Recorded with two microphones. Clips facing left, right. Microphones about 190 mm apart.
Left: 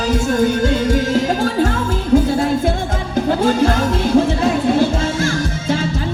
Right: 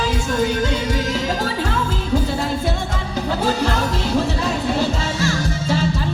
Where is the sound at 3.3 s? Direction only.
50° left (ahead or behind).